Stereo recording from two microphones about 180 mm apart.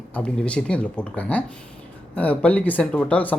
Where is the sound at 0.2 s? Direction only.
5° left (ahead or behind).